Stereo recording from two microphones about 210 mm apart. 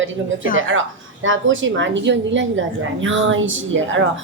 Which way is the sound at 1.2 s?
65° right (ahead or behind).